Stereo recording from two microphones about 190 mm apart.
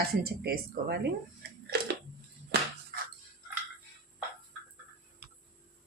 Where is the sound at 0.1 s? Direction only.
55° right (ahead or behind).